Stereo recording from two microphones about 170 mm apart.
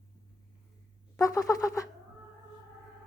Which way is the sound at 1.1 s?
20° left (ahead or behind).